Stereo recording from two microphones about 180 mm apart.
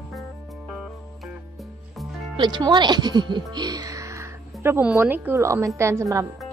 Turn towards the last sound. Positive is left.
turn(degrees=-15)  # may be behind; listen again after turning